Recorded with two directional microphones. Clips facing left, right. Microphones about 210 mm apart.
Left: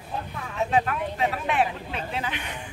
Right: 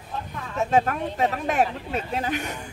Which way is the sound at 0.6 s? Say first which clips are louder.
Right 2 dB; 45° right (ahead or behind).